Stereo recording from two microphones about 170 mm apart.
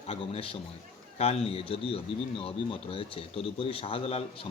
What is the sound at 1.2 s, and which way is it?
A man's voice, 35° left (ahead or behind).